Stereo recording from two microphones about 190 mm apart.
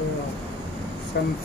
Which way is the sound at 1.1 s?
60° left (ahead or behind).